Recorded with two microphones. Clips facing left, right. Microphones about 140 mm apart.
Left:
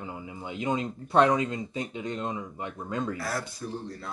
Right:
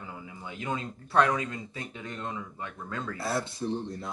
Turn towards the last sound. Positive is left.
turn(degrees=-20)  # may be behind; listen again after turning